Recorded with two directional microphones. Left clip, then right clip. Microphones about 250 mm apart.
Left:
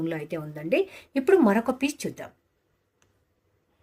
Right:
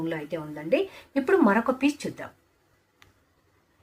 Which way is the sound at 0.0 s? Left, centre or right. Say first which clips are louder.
Even; left.